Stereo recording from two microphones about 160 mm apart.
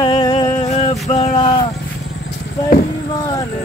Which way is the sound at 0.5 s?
40° left (ahead or behind).